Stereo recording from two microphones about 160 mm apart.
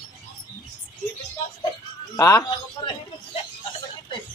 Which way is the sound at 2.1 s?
25° left (ahead or behind).